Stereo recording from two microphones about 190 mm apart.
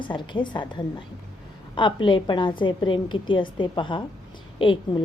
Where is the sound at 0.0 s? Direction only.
25° left (ahead or behind).